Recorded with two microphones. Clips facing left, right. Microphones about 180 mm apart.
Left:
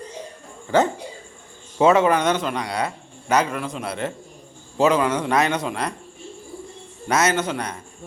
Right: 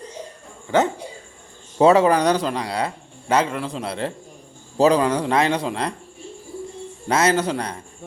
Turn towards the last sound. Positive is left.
turn(degrees=-35)  # may be behind; listen again after turning